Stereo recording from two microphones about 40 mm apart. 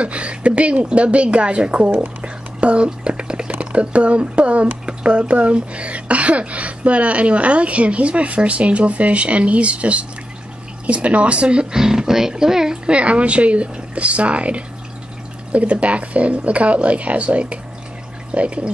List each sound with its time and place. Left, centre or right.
0.0 s speech: right
2.0 s whispering: right
3.7 s speech: right
11.7 s a woman's voice: centre
12.9 s speech: right